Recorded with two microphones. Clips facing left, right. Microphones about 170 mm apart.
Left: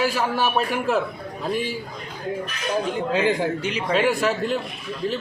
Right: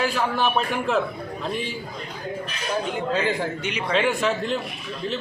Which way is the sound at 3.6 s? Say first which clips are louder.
Left 2 dB; 35° left (ahead or behind).